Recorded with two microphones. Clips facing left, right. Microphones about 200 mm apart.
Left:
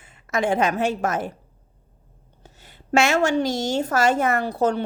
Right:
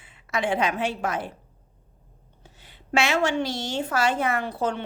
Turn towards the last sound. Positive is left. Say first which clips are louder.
# left 5 dB
turn(degrees=40)  # may be behind; listen again after turning